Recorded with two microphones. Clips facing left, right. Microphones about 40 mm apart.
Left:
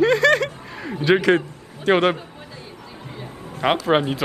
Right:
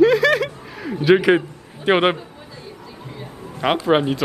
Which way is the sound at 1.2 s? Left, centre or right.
Centre.